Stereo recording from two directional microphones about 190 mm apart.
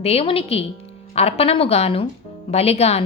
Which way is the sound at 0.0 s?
30° left (ahead or behind).